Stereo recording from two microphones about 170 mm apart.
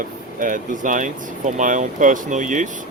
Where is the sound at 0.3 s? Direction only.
50° right (ahead or behind).